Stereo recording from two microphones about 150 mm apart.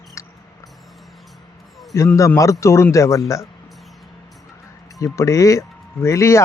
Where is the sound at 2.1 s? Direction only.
20° left (ahead or behind).